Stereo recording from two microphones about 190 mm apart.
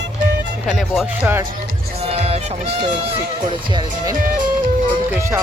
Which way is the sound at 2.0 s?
35° right (ahead or behind).